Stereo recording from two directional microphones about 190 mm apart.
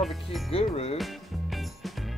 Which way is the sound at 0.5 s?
30° left (ahead or behind).